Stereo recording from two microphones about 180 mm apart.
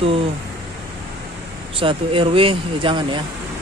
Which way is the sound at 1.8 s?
30° right (ahead or behind).